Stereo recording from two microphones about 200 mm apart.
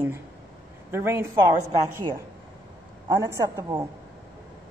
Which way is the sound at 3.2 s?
15° right (ahead or behind).